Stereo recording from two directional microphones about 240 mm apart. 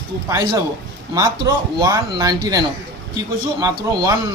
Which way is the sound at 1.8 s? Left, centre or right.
Centre.